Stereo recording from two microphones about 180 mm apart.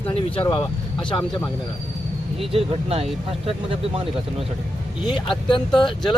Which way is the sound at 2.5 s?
35° right (ahead or behind).